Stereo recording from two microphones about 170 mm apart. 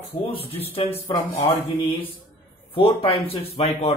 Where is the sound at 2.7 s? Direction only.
30° left (ahead or behind).